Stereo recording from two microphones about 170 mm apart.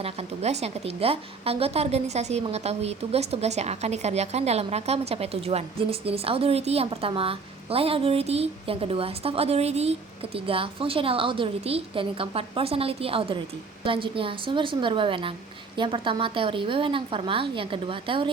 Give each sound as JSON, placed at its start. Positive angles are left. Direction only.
{"t": 0.0, "sound": "a woman's voice", "side_deg": -40}